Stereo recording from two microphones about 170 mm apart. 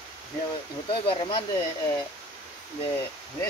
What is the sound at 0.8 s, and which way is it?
Speech, 30° left (ahead or behind).